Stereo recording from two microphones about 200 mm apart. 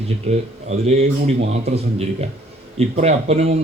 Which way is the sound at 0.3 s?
30° right (ahead or behind).